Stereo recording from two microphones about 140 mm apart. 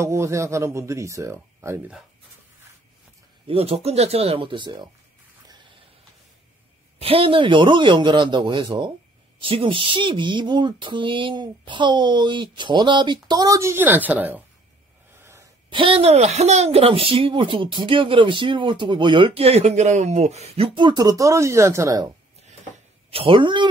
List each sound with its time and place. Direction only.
0.0 s speech: 20° right (ahead or behind)
3.4 s speech: 45° right (ahead or behind)
7.0 s speech: 40° right (ahead or behind); by 14.4 s 10° right (ahead or behind)
15.7 s speech: 40° right (ahead or behind); by 22.1 s 25° right (ahead or behind)
23.0 s speech: 40° right (ahead or behind)